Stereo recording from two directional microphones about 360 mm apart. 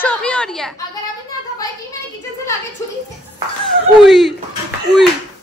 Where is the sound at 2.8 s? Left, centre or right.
Centre.